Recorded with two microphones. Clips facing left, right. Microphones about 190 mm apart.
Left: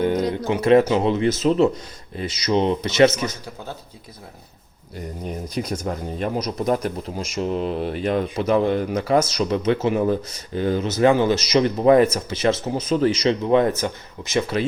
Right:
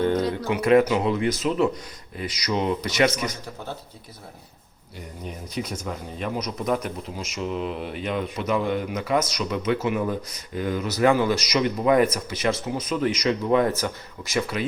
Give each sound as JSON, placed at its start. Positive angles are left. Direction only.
{"t": 0.0, "sound": "a sound", "side_deg": 15}
{"t": 0.5, "sound": "speech", "side_deg": 25}
{"t": 4.9, "sound": "speech", "side_deg": 40}